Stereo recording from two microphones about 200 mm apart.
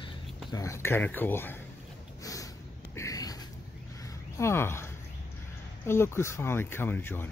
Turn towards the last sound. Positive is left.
turn(degrees=10)  # may be behind; listen again after turning